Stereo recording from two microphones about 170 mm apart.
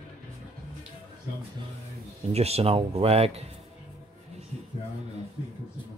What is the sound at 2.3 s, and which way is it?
Speech, 35° right (ahead or behind).